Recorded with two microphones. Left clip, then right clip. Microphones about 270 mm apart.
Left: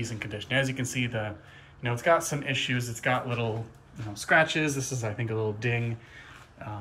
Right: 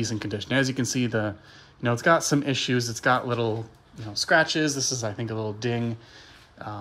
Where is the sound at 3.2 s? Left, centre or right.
Right.